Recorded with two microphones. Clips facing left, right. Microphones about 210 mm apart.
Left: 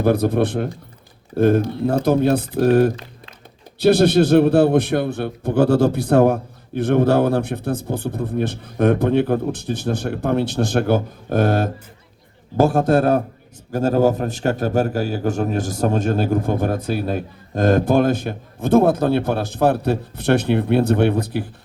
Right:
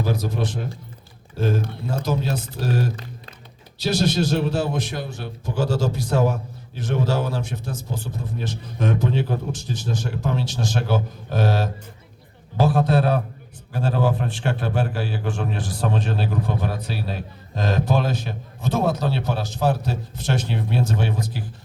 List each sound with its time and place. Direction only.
0.0 s a man's voice: 60° left (ahead or behind)